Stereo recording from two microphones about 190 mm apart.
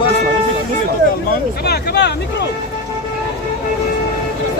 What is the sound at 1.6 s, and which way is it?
Speech, 55° left (ahead or behind).